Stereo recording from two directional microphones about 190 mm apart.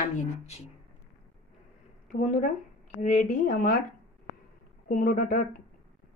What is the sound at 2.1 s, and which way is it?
Speech, 45° left (ahead or behind).